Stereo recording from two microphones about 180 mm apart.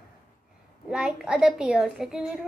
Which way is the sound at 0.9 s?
5° right (ahead or behind).